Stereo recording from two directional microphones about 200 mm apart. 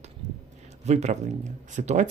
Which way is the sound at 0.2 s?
35° right (ahead or behind).